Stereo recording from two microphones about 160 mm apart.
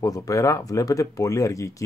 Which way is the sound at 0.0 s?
20° left (ahead or behind).